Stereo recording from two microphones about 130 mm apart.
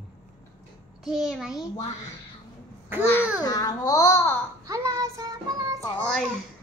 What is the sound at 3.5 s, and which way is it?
Speech, 30° left (ahead or behind).